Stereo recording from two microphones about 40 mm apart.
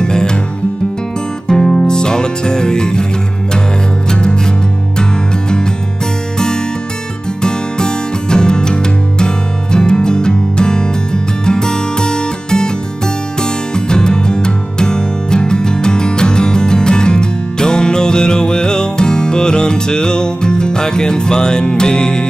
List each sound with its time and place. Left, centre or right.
0.0 s music: centre
1.5 s music: centre
4.1 s music: left
7.4 s music: centre